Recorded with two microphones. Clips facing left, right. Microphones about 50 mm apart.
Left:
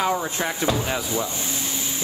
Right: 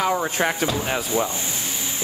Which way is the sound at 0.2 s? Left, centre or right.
Right.